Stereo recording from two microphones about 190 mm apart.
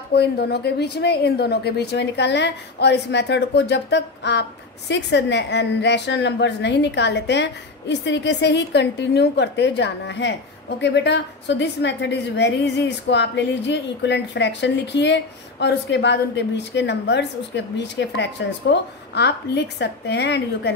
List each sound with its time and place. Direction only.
0.1 s a woman's voice: 60° left (ahead or behind)